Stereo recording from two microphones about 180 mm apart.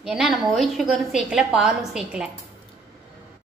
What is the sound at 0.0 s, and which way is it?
A woman's voice, centre (ahead or behind).